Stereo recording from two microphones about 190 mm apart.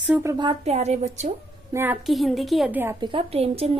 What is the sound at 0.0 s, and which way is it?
Speech, 5° right (ahead or behind).